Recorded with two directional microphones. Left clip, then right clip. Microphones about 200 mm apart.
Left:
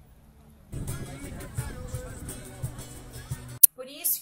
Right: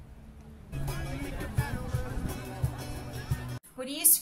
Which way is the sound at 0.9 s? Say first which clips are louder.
Right 4 dB; 15° left (ahead or behind).